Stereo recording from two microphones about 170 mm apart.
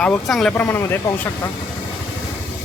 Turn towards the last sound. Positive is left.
turn(degrees=15)  # may be behind; listen again after turning